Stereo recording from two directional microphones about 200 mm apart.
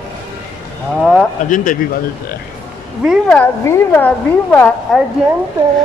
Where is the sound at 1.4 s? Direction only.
40° left (ahead or behind).